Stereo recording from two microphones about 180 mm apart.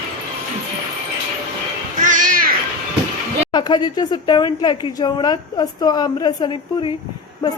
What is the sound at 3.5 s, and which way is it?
Speech, 25° left (ahead or behind).